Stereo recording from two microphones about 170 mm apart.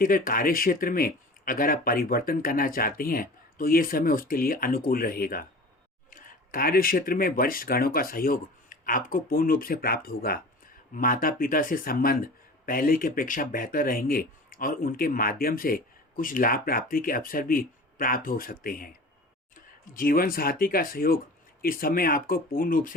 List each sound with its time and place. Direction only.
0.0 s speech: 55° left (ahead or behind)